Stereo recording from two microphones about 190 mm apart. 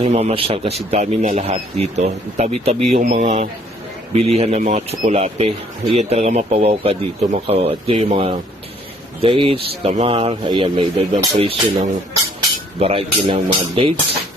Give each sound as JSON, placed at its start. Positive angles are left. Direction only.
{"t": 0.0, "sound": "speech", "side_deg": -35}